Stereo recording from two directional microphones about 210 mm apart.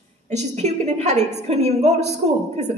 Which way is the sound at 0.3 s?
35° right (ahead or behind).